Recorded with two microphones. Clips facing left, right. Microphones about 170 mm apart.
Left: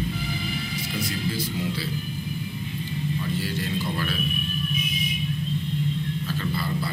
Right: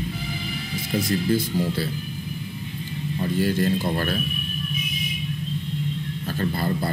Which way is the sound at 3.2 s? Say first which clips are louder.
Right 7 dB; 45° right (ahead or behind).